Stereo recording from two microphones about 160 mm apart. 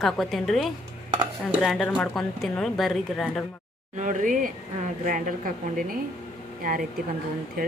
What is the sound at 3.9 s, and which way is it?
Speech, 55° right (ahead or behind).